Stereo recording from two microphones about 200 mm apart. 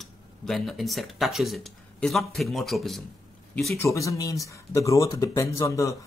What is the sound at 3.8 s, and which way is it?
Speech, 15° left (ahead or behind).